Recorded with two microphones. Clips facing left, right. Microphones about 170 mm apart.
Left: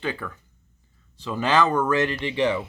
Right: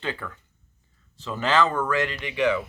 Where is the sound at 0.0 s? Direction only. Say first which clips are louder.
Left 2 dB; 15° left (ahead or behind).